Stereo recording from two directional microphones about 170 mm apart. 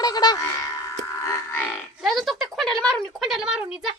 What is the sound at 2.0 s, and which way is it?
Speech, centre (ahead or behind).